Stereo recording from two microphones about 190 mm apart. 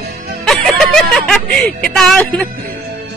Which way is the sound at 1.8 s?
5° left (ahead or behind).